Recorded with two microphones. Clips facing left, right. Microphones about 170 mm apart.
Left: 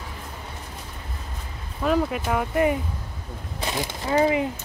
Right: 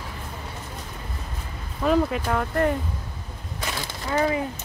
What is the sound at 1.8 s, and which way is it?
Speech, centre (ahead or behind).